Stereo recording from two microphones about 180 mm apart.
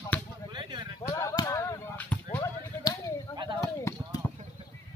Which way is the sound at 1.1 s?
20° left (ahead or behind).